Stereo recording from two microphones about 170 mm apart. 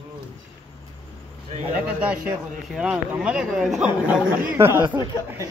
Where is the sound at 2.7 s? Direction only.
5° right (ahead or behind).